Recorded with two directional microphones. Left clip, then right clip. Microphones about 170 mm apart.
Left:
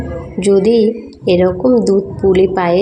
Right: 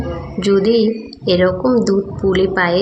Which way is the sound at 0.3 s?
15° left (ahead or behind).